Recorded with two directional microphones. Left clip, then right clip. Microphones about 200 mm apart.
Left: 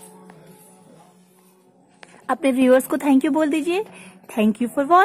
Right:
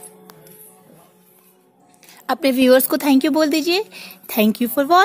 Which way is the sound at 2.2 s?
15° right (ahead or behind).